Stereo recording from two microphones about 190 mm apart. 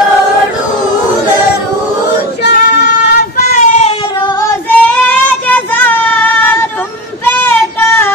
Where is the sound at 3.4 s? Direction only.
35° left (ahead or behind).